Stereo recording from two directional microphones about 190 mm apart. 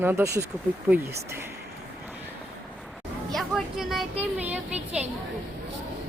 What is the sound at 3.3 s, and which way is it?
Vehicle, centre (ahead or behind).